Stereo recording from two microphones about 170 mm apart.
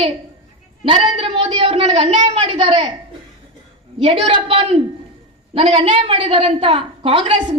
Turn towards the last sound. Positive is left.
turn(degrees=-30)  # may be behind; listen again after turning